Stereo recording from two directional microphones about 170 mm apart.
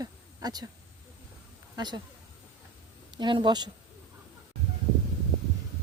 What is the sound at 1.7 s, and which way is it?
Speech, 25° right (ahead or behind).